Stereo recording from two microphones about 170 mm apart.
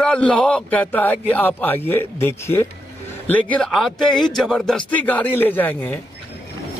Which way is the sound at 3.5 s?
5° left (ahead or behind).